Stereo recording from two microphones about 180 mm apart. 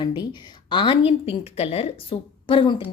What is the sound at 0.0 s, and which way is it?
A woman's voice, 25° left (ahead or behind).